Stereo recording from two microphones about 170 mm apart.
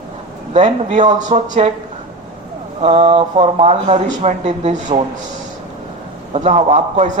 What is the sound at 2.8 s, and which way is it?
Speech, 35° right (ahead or behind).